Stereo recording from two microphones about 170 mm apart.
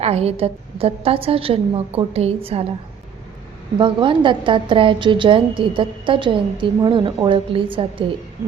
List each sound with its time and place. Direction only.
0.0 s a woman's voice: 35° right (ahead or behind)
3.8 s a woman's voice: 30° right (ahead or behind)